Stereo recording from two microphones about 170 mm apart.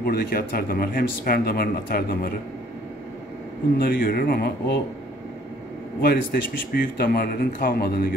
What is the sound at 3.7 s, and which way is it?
A man's voice, 60° left (ahead or behind).